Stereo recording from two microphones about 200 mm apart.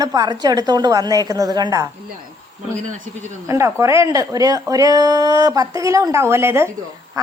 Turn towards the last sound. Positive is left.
turn(degrees=-10)  # may be behind; listen again after turning